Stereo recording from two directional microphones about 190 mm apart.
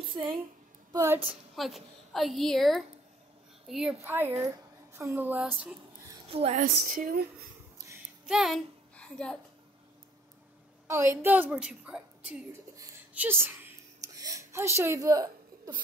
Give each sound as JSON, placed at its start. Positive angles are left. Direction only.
{"t": 0.1, "sound": "a woman's voice", "side_deg": -25}
{"t": 0.9, "sound": "a woman's voice", "side_deg": -10}
{"t": 1.5, "sound": "a woman's voice", "side_deg": 0}
{"t": 4.0, "sound": "a woman's voice", "side_deg": -10}
{"t": 6.2, "sound": "a woman's voice", "side_deg": -30}
{"t": 6.6, "sound": "speech", "side_deg": -45}
{"t": 8.3, "sound": "a child's voice", "side_deg": 0}
{"t": 10.9, "sound": "a woman's voice", "side_deg": -15}
{"t": 12.7, "sound": "a sound", "side_deg": -10}